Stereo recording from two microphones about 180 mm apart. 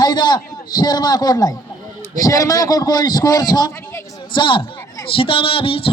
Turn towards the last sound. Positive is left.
turn(degrees=30)  # may be behind; listen again after turning